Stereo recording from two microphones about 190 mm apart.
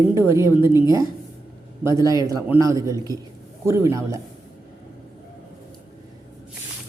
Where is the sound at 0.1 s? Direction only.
15° right (ahead or behind).